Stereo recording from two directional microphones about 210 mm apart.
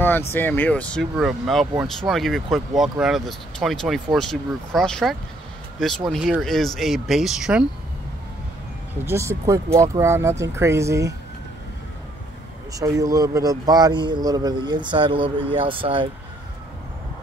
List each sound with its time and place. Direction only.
0.3 s speech: 10° left (ahead or behind)
9.0 s speech: 15° right (ahead or behind)
12.7 s speech: 15° right (ahead or behind)